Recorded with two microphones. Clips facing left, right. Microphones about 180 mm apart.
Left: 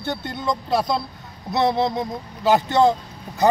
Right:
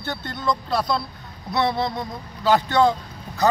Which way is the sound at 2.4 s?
10° left (ahead or behind).